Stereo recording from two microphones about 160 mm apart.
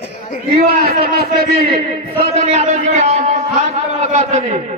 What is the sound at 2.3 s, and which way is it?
A man's voice, 45° right (ahead or behind).